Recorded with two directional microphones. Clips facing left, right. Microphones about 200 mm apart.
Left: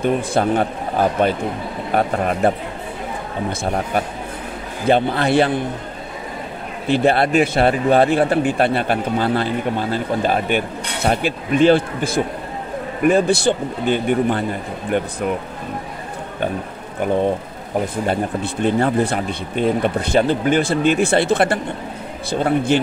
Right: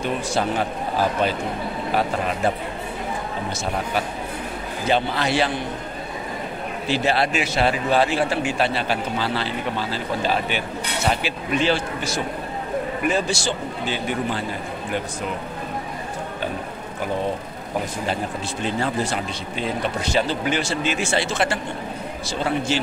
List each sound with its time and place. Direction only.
0.0 s a man's voice: 55° left (ahead or behind)
3.6 s a man's voice: 50° left (ahead or behind)
6.9 s a man's voice: 55° left (ahead or behind)
18.0 s speech: 55° left (ahead or behind)